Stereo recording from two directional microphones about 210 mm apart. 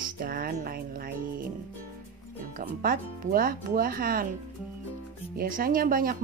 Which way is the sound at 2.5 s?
40° right (ahead or behind).